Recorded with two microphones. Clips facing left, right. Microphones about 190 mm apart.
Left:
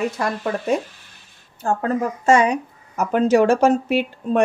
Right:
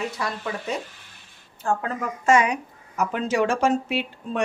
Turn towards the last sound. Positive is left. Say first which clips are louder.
# left 8 dB
turn(degrees=45)  # may be behind; listen again after turning